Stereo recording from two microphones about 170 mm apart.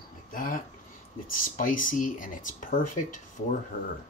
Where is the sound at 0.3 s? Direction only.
55° left (ahead or behind).